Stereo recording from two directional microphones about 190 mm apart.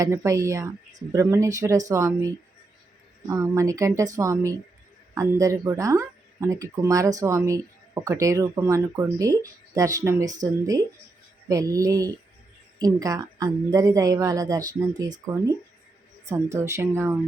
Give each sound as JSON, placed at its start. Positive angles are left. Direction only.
{"t": 0.0, "sound": "a woman's voice", "side_deg": -15}